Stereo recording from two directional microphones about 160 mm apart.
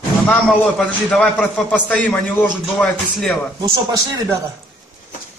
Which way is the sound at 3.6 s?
20° right (ahead or behind).